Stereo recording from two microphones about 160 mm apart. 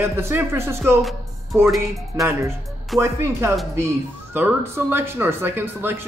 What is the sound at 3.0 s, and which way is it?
Speech, 15° right (ahead or behind).